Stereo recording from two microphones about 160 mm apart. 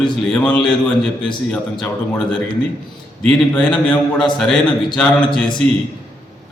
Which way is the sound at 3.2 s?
5° left (ahead or behind).